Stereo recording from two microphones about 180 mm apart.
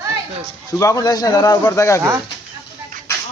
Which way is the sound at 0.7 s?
20° left (ahead or behind).